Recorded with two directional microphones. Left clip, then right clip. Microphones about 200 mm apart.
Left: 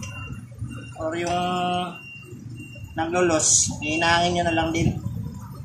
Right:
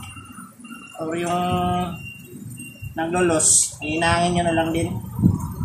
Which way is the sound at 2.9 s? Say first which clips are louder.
Right 1 dB; 15° right (ahead or behind).